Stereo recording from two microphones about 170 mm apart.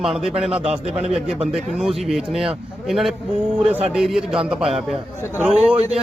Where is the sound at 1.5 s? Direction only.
5° right (ahead or behind).